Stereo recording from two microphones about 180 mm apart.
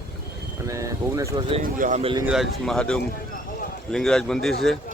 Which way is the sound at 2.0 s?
30° right (ahead or behind).